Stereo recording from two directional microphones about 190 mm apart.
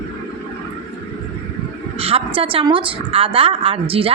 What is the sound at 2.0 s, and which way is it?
A woman's voice, 30° right (ahead or behind).